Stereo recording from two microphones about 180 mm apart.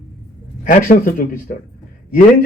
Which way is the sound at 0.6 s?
50° left (ahead or behind).